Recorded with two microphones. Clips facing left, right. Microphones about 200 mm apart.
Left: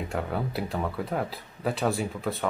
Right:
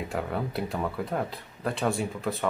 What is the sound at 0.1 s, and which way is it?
Speech, centre (ahead or behind).